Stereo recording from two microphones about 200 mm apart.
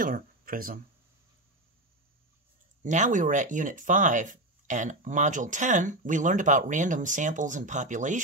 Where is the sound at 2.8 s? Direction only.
40° right (ahead or behind).